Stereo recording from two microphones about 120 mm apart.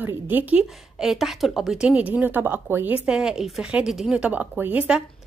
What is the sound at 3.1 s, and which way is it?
A woman's voice, 5° right (ahead or behind).